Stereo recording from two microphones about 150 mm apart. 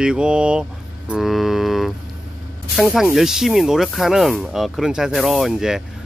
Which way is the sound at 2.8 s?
10° right (ahead or behind).